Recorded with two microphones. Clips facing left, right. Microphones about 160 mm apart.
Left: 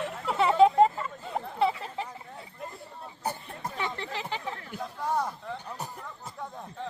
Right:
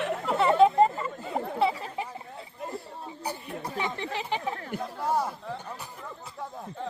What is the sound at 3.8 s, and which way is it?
Chatter, 15° right (ahead or behind).